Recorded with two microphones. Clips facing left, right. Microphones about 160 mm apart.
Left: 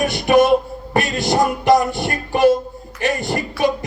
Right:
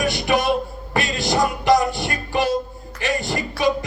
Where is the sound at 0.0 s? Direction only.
55° left (ahead or behind).